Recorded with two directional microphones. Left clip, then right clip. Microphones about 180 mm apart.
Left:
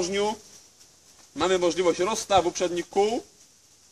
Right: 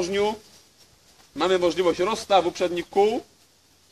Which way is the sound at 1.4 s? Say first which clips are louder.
Right 2 dB; 15° left (ahead or behind).